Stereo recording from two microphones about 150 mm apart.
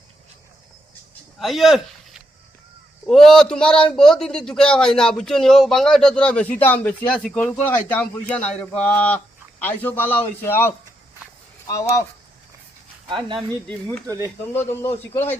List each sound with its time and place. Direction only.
1.4 s a man's voice: centre (ahead or behind); by 11.9 s 20° left (ahead or behind)
13.7 s speech: 5° left (ahead or behind)